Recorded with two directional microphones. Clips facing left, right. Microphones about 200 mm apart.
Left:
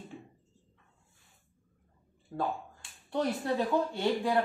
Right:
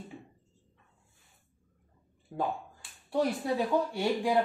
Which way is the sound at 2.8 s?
10° right (ahead or behind).